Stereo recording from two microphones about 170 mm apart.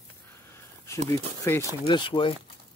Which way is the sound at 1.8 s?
30° left (ahead or behind).